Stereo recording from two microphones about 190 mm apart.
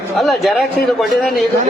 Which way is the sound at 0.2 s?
Centre (ahead or behind).